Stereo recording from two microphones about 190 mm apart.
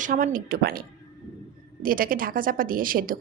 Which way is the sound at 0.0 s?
45° right (ahead or behind).